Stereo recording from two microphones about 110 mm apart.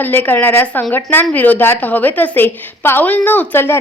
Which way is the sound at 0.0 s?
15° left (ahead or behind).